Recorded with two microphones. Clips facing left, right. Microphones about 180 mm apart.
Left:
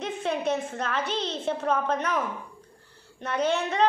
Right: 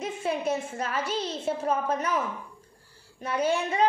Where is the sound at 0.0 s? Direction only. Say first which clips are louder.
Left 1 dB; 10° right (ahead or behind).